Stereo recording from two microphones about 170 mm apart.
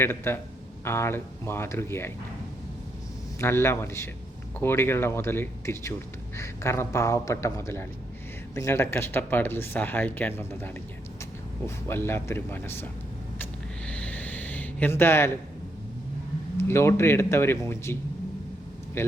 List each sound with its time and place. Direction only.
0.0 s speech: 15° left (ahead or behind)
3.4 s speech: 15° left (ahead or behind)
13.4 s a sound: 5° left (ahead or behind)
16.6 s speech: 15° left (ahead or behind)
19.0 s speech: 15° left (ahead or behind)